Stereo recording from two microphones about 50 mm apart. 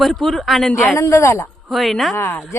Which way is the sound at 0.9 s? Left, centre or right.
Left.